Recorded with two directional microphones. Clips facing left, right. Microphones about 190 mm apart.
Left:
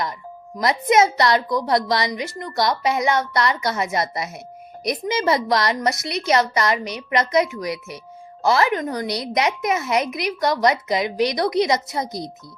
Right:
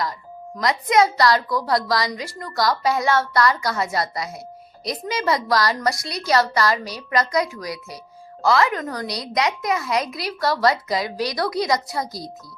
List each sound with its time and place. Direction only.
0.6 s a woman's voice: 25° left (ahead or behind)